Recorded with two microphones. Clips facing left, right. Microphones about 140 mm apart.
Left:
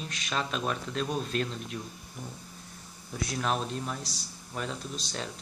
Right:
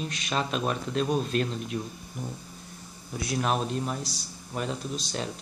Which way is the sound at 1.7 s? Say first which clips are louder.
Right 8 dB; 20° right (ahead or behind).